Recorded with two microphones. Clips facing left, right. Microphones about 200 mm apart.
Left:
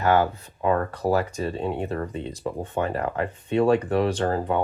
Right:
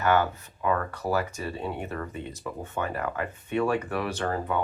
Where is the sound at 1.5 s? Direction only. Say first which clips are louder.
Left 5 dB; 20° left (ahead or behind).